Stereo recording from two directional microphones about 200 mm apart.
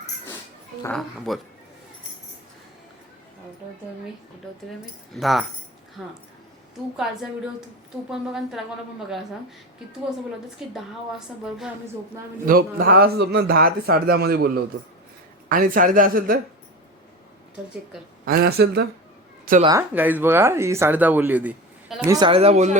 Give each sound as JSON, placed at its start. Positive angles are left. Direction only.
{"t": 0.9, "sound": "speech", "side_deg": 0}
{"t": 5.1, "sound": "speech", "side_deg": 0}
{"t": 10.6, "sound": "speech", "side_deg": -5}
{"t": 12.5, "sound": "a man's voice", "side_deg": -45}
{"t": 18.3, "sound": "a man's voice", "side_deg": -50}
{"t": 19.9, "sound": "speech", "side_deg": -10}
{"t": 22.0, "sound": "speech", "side_deg": -20}